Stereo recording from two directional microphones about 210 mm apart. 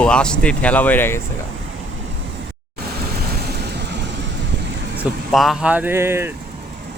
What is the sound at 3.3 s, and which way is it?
Waves, 50° right (ahead or behind).